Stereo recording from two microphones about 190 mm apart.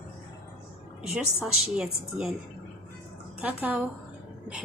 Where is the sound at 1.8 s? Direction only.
5° right (ahead or behind).